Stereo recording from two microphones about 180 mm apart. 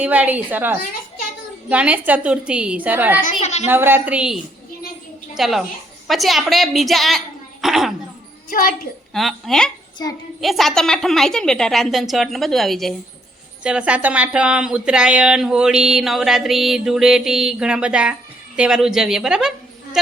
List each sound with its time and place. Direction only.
0.0 s a woman's voice: 10° right (ahead or behind)
3.4 s a woman's voice: 40° left (ahead or behind)
3.7 s a woman's voice: 10° right (ahead or behind)
7.6 s a sound: centre (ahead or behind)
8.4 s a child's voice: 50° left (ahead or behind)
9.1 s speech: centre (ahead or behind)
10.0 s a woman's voice: 20° left (ahead or behind)
10.4 s speech: centre (ahead or behind)